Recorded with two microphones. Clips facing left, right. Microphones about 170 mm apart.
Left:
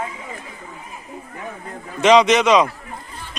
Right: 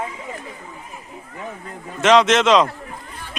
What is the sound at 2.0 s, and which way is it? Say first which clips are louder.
Speech: left 1 dB; centre (ahead or behind).